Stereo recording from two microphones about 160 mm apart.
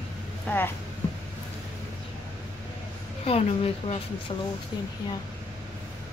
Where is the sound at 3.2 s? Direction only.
40° left (ahead or behind).